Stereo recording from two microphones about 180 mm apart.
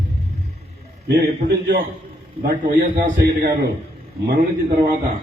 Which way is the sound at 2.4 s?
50° right (ahead or behind).